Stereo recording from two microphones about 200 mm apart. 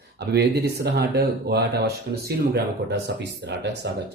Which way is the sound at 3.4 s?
60° right (ahead or behind).